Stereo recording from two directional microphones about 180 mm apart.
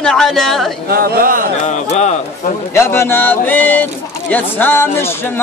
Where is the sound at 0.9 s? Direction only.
55° right (ahead or behind).